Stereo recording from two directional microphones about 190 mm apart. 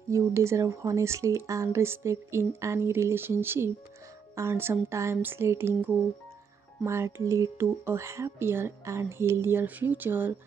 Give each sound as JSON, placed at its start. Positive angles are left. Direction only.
{"t": 0.1, "sound": "speech", "side_deg": -15}